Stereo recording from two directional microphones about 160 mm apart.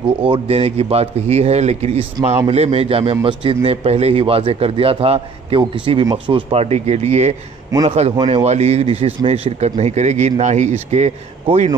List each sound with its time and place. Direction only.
0.2 s a man's voice: 35° right (ahead or behind)